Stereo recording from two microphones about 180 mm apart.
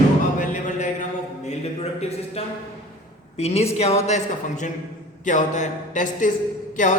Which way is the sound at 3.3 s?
35° left (ahead or behind).